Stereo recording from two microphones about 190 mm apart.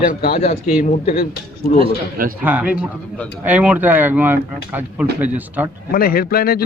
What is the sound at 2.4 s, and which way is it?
A man's voice, 10° right (ahead or behind).